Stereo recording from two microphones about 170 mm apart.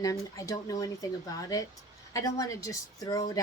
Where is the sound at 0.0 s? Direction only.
20° left (ahead or behind).